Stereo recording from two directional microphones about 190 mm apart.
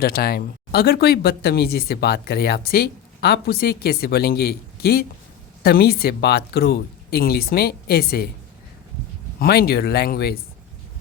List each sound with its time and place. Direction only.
0.0 s speech: 55° left (ahead or behind)
9.4 s speech: 55° left (ahead or behind)